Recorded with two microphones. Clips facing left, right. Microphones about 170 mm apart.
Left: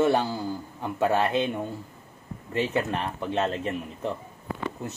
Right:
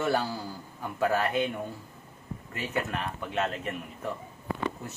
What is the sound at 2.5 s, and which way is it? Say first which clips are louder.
A man's voice: left 6 dB; 30° left (ahead or behind).